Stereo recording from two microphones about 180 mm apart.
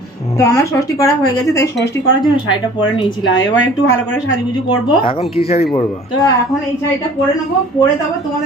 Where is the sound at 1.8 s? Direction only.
Centre (ahead or behind).